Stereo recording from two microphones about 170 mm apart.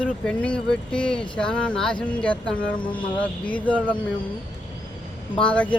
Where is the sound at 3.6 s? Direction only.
10° left (ahead or behind).